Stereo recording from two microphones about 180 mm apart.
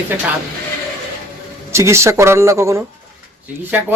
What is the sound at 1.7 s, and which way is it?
Speech, 15° right (ahead or behind).